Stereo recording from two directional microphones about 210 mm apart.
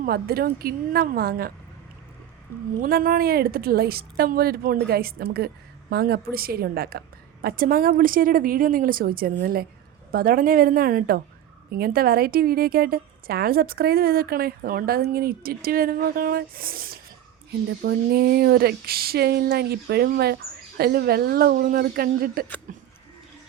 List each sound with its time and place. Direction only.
0.0 s a woman's voice: 45° right (ahead or behind)
2.8 s a woman's voice: 45° right (ahead or behind)